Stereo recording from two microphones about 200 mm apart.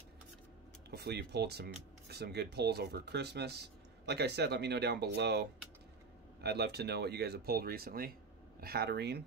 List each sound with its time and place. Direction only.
0.8 s speech: 55° right (ahead or behind)